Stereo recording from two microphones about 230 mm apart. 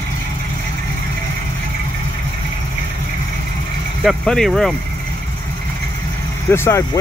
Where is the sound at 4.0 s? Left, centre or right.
Centre.